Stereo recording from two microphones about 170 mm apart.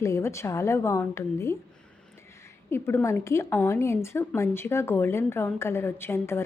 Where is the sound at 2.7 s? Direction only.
15° left (ahead or behind).